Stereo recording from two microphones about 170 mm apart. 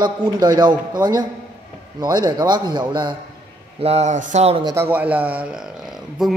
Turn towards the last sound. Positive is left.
turn(degrees=-5)  # may be behind; listen again after turning